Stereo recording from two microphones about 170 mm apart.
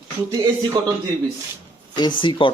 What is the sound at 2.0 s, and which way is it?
Speech, 30° left (ahead or behind).